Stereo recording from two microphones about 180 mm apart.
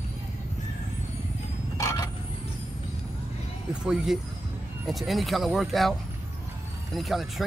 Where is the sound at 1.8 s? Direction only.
15° left (ahead or behind).